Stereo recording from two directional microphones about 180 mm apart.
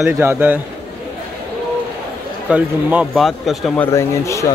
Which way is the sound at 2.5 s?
5° right (ahead or behind).